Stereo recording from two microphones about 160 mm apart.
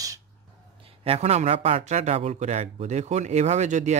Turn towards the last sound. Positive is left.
turn(degrees=-45)  # may be behind; listen again after turning